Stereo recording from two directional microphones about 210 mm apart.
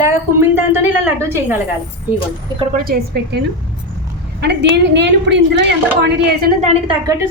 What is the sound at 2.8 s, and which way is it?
Speech, 45° right (ahead or behind).